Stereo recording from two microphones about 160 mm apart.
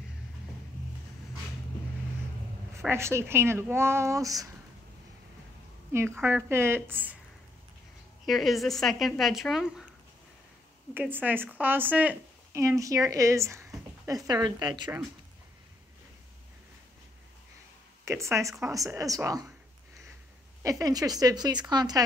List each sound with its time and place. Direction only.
2.9 s speech: 15° right (ahead or behind)
5.9 s speech: 15° right (ahead or behind)
8.3 s speech: centre (ahead or behind)
11.0 s speech: 10° right (ahead or behind)
18.0 s speech: 20° right (ahead or behind)
20.6 s speech: 20° right (ahead or behind)